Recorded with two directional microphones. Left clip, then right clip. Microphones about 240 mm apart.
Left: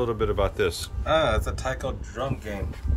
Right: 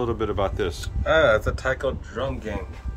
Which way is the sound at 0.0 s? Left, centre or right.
Centre.